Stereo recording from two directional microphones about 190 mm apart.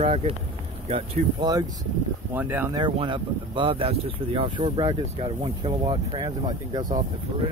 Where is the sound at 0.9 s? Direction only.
20° right (ahead or behind).